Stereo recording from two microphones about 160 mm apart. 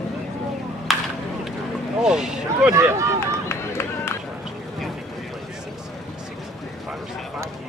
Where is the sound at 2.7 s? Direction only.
20° right (ahead or behind).